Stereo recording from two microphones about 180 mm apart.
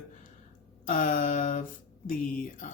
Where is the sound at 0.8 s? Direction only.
45° left (ahead or behind).